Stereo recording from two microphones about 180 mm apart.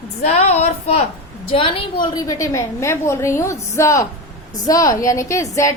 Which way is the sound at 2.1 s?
20° left (ahead or behind).